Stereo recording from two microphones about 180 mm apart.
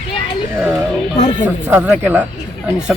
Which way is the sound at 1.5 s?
10° right (ahead or behind).